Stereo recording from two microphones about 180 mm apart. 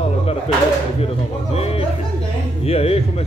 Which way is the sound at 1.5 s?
35° left (ahead or behind).